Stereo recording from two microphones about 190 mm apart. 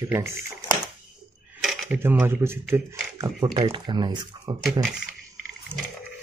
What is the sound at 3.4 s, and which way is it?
Speech, 25° right (ahead or behind).